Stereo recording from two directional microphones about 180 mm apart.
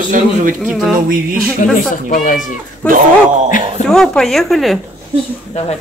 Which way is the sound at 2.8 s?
5° left (ahead or behind).